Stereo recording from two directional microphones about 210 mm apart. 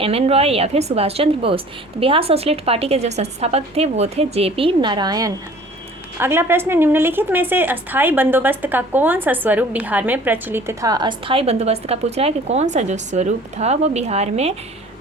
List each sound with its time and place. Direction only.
0.0 s a woman's voice: 30° right (ahead or behind)